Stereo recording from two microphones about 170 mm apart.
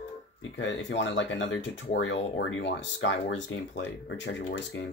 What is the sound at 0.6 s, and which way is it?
Speech, 90° left.